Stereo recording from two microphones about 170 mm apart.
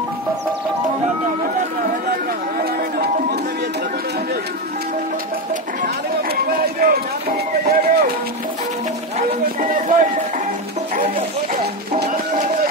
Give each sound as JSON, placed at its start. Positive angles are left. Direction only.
{"t": 2.6, "sound": "music", "side_deg": -65}
{"t": 6.5, "sound": "run", "side_deg": -60}
{"t": 9.6, "sound": "a sound", "side_deg": -50}
{"t": 11.0, "sound": "music", "side_deg": -45}